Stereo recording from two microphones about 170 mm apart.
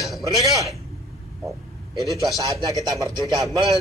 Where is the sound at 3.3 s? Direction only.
20° right (ahead or behind).